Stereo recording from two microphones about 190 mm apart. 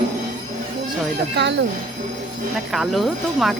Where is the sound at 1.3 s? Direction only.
65° right (ahead or behind).